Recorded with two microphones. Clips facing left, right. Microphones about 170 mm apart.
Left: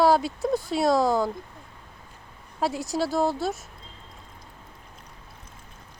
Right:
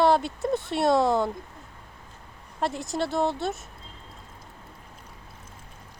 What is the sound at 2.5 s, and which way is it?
Speech, 5° left (ahead or behind).